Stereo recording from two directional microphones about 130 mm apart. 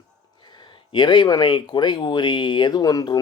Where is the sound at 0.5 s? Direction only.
35° left (ahead or behind).